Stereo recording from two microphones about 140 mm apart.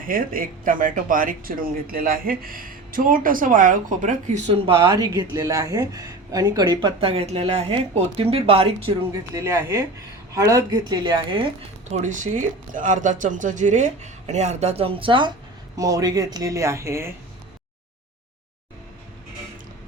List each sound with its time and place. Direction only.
0.0 s speech: 85° right; by 4.6 s 55° right (ahead or behind)
4.6 s speech: 35° right (ahead or behind)
7.0 s speech: 45° right (ahead or behind)
9.1 s speech: 25° right (ahead or behind)
11.9 s speech: 60° right (ahead or behind); by 15.3 s 35° right (ahead or behind)
15.7 s speech: 25° right (ahead or behind)